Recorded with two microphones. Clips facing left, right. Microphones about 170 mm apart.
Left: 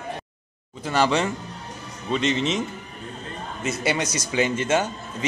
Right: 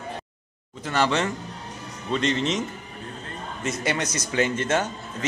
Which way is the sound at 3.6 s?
10° left (ahead or behind).